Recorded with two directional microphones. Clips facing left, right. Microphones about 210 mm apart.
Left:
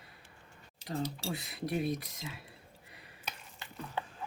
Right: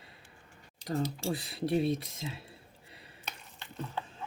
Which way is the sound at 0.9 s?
40° right (ahead or behind).